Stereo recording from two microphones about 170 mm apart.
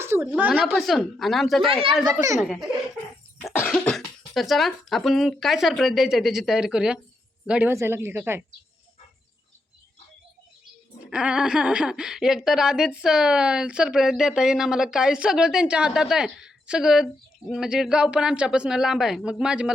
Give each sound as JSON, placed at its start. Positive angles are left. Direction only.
{"t": 0.0, "sound": "speech", "side_deg": -15}
{"t": 0.5, "sound": "a woman's voice", "side_deg": 5}
{"t": 3.7, "sound": "a woman's voice", "side_deg": 0}
{"t": 11.1, "sound": "a woman's voice", "side_deg": -5}